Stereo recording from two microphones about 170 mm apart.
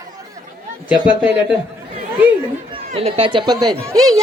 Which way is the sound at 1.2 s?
5° right (ahead or behind).